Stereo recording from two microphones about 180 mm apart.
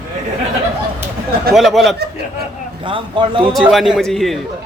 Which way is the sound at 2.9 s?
30° right (ahead or behind).